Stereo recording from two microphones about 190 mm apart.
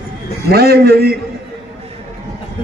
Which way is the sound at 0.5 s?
55° right (ahead or behind).